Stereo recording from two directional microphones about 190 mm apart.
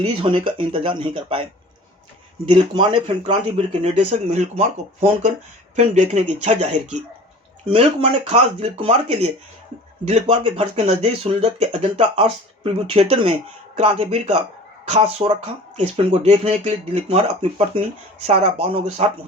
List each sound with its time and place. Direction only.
0.0 s speech: 25° right (ahead or behind)
2.5 s speech: 25° right (ahead or behind)
3.4 s speech: 35° right (ahead or behind)